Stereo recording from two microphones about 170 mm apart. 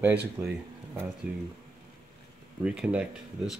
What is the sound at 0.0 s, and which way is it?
Speech, 10° right (ahead or behind).